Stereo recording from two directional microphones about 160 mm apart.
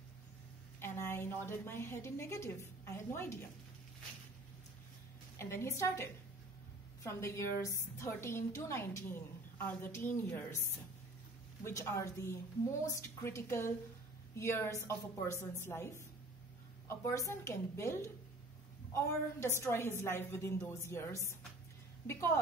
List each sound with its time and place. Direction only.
0.7 s a woman's voice: 15° left (ahead or behind)
5.4 s a woman's voice: 15° left (ahead or behind)